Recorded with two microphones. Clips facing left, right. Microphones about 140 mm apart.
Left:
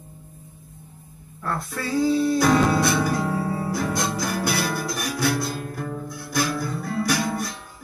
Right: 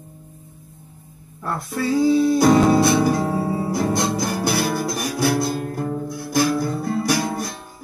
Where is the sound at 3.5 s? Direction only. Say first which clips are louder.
Right 4 dB; 25° right (ahead or behind).